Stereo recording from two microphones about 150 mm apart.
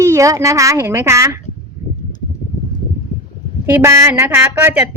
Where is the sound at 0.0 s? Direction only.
20° right (ahead or behind).